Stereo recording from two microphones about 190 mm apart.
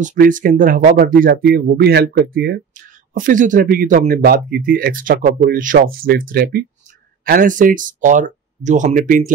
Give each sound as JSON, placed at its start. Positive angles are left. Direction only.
{"t": 0.0, "sound": "speech", "side_deg": -45}